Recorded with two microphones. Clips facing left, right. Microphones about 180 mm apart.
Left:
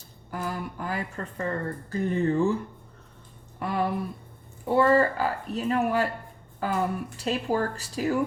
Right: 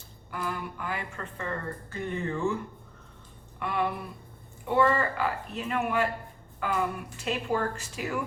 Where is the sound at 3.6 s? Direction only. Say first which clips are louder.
Left 3 dB; 35° left (ahead or behind).